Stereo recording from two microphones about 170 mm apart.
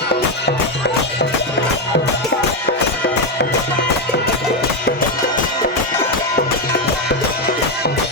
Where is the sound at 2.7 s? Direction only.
80° left.